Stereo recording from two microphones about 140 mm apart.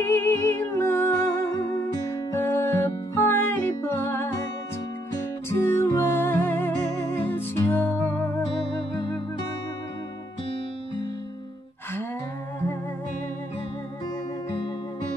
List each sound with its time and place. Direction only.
0.0 s music: 15° left (ahead or behind)
5.5 s music: 20° left (ahead or behind)